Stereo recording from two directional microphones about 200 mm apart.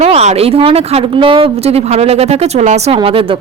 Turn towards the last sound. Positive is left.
turn(degrees=-25)  # may be behind; listen again after turning